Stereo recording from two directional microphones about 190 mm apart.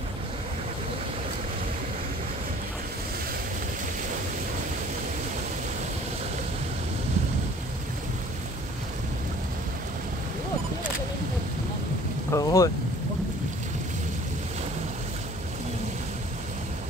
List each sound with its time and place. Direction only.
12.3 s boat: 20° left (ahead or behind)